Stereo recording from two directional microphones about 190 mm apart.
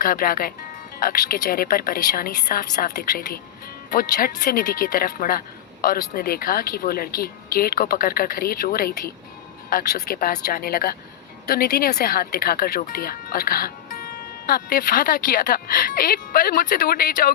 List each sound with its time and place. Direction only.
0.0 s speech: 50° left (ahead or behind)